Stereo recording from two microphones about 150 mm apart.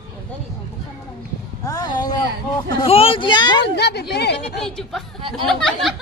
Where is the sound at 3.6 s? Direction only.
90° left.